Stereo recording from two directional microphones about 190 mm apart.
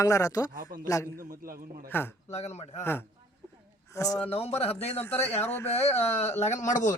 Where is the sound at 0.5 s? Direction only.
45° right (ahead or behind).